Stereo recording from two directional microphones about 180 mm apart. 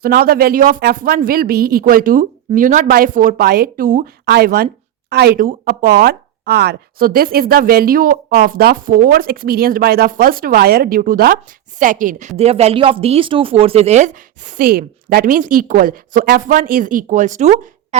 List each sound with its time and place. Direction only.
0.0 s a woman's voice: 55° right (ahead or behind)
12.4 s speech: 35° right (ahead or behind)